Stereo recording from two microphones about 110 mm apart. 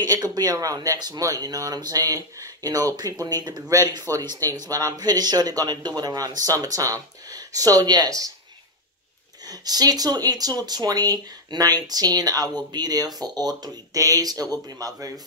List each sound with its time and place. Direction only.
0.0 s speech: 40° right (ahead or behind)
9.5 s speech: 35° right (ahead or behind)